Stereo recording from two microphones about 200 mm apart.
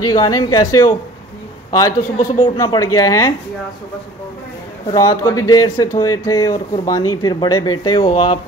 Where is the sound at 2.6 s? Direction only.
15° left (ahead or behind).